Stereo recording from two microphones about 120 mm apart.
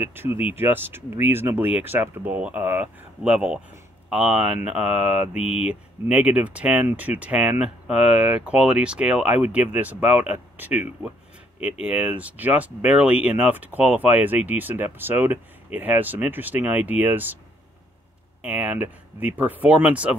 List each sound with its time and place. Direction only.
0.0 s speech: 20° right (ahead or behind)
5.4 s speech: 55° left (ahead or behind)
5.7 s speech: 10° right (ahead or behind)
18.4 s speech: 10° right (ahead or behind)